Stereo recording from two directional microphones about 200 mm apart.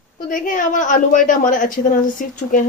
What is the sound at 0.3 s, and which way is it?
A woman's voice, 40° left (ahead or behind).